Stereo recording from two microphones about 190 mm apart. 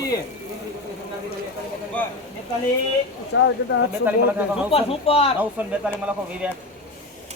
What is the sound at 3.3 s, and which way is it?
Speech, 70° left (ahead or behind).